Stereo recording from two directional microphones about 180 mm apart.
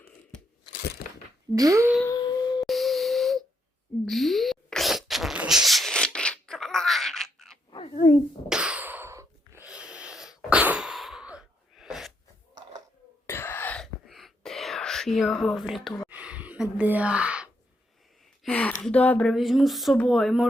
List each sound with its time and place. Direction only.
1.5 s speech: 20° right (ahead or behind)
2.0 s howl: 20° left (ahead or behind)
2.6 s a sound: centre (ahead or behind)
8.4 s sneeze: 5° right (ahead or behind)
9.6 s sneeze: 5° right (ahead or behind)
13.2 s wail: 10° left (ahead or behind)
16.0 s gasp: 5° right (ahead or behind)
18.4 s speech: 5° left (ahead or behind)